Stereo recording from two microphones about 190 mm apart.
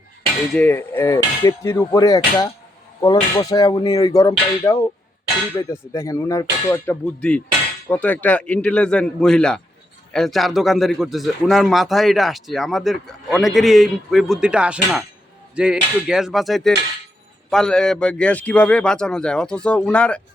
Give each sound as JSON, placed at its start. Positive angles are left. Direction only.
{"t": 0.5, "sound": "hammer", "side_deg": 10}
{"t": 3.0, "sound": "speech", "side_deg": 20}
{"t": 5.5, "sound": "hammer", "side_deg": 15}
{"t": 7.0, "sound": "a man's voice", "side_deg": 5}